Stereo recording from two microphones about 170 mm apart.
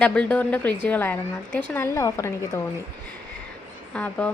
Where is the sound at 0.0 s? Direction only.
5° left (ahead or behind).